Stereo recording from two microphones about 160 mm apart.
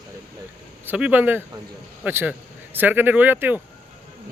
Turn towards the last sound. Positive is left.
turn(degrees=-10)  # may be behind; listen again after turning